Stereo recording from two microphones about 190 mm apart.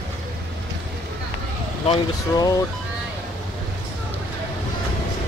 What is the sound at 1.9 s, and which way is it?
Speech, 20° left (ahead or behind).